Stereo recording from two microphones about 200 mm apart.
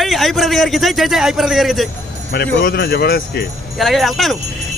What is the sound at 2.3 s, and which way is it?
Speech, 55° left (ahead or behind).